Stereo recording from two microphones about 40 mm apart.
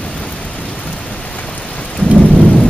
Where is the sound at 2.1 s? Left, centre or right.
Right.